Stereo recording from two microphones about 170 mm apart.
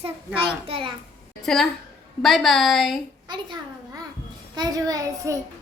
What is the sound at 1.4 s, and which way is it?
A woman's voice, 5° left (ahead or behind).